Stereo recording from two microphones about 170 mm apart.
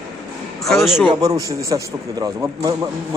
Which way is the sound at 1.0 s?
20° right (ahead or behind).